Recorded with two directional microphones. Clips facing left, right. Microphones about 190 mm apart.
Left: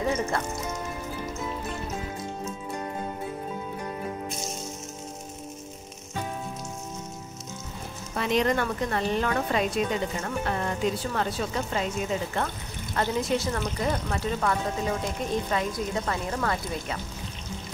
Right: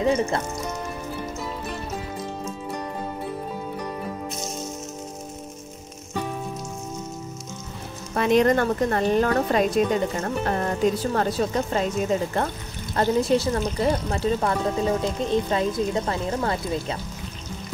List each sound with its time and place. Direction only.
0.0 s speech: 25° right (ahead or behind)
8.1 s a woman's voice: 50° right (ahead or behind); by 17.0 s 25° right (ahead or behind)